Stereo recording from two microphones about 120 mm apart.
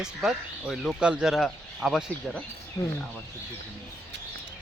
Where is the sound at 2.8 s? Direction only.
20° left (ahead or behind).